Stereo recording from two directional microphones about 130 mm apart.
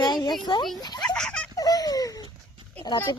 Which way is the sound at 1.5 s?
30° left (ahead or behind).